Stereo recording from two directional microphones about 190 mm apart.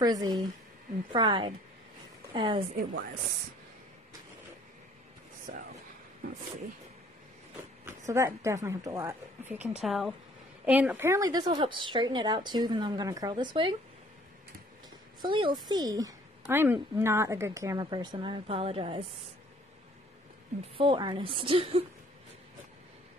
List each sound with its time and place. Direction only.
0.0 s a woman's voice: 20° right (ahead or behind)
5.5 s speech: 45° right (ahead or behind)
8.1 s a woman's voice: 15° right (ahead or behind)
15.2 s a woman's voice: 25° right (ahead or behind)
20.7 s a woman's voice: 25° right (ahead or behind)